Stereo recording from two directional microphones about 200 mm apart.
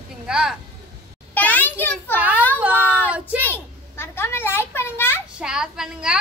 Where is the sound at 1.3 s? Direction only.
10° left (ahead or behind).